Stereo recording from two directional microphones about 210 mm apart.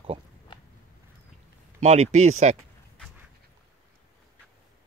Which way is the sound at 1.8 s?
30° right (ahead or behind).